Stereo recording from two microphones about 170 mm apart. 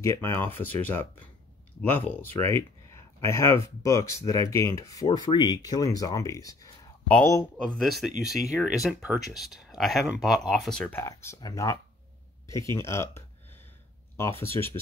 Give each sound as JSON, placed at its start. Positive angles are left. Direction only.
{"t": 0.0, "sound": "speech", "side_deg": 15}
{"t": 7.6, "sound": "speech", "side_deg": 0}
{"t": 12.4, "sound": "speech", "side_deg": -25}
{"t": 12.7, "sound": "speech", "side_deg": 15}
{"t": 14.4, "sound": "speech", "side_deg": 15}